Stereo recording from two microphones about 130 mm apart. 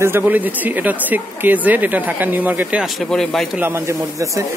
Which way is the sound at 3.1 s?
Centre (ahead or behind).